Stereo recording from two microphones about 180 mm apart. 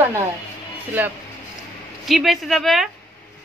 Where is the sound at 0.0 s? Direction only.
15° right (ahead or behind).